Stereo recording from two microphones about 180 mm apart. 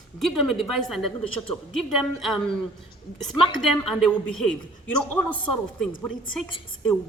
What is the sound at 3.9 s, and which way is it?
A woman's voice, centre (ahead or behind).